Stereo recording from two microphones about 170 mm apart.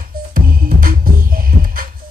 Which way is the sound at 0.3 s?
55° right (ahead or behind).